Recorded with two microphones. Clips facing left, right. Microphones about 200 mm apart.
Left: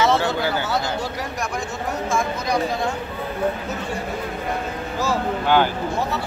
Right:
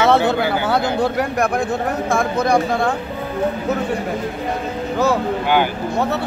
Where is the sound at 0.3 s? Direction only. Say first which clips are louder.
Right 5 dB; 55° right (ahead or behind).